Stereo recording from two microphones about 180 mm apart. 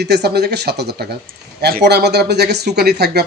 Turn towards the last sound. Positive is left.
turn(degrees=-65)  # may be behind; listen again after turning